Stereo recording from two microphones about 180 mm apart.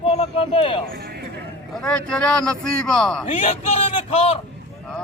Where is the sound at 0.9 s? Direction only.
65° right (ahead or behind).